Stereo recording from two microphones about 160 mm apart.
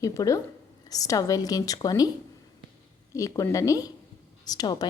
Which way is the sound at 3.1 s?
20° left (ahead or behind).